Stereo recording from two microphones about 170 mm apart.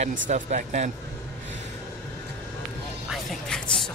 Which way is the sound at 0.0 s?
45° right (ahead or behind).